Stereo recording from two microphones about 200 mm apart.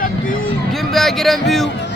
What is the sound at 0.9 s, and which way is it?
Speech, centre (ahead or behind).